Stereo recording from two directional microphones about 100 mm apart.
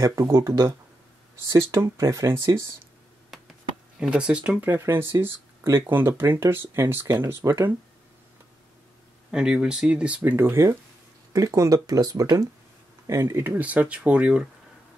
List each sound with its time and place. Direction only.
0.0 s speech: 30° right (ahead or behind)
3.3 s a sound: centre (ahead or behind)
4.0 s speech: 5° right (ahead or behind); by 7.6 s 25° right (ahead or behind)
9.3 s speech: 10° right (ahead or behind)
10.3 s speech: 25° right (ahead or behind)